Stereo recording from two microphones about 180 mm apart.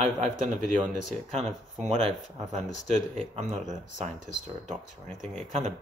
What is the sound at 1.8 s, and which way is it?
Speech, 35° right (ahead or behind).